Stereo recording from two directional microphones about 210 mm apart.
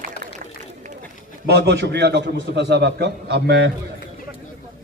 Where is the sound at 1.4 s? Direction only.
55° right (ahead or behind).